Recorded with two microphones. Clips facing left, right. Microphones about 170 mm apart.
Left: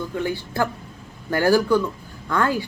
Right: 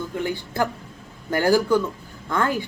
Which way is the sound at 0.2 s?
20° right (ahead or behind).